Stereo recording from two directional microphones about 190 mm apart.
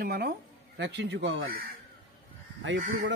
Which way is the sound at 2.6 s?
80° right.